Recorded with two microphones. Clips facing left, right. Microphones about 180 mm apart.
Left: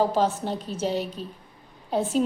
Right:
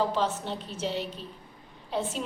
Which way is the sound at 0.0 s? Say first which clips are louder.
Left 5 dB; 45° left (ahead or behind).